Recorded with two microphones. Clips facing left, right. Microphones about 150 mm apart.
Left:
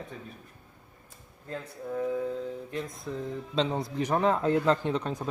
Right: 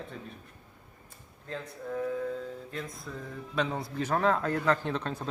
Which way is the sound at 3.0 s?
20° left (ahead or behind).